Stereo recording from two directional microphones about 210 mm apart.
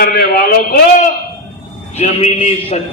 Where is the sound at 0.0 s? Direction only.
45° left (ahead or behind).